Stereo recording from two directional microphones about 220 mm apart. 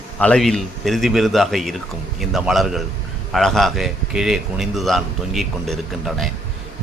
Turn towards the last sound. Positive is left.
turn(degrees=0)  # may be behind; listen again after turning